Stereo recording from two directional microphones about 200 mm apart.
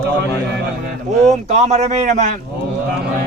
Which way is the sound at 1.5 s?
35° right (ahead or behind).